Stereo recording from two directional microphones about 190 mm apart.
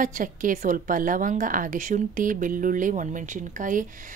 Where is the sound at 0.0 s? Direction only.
45° right (ahead or behind).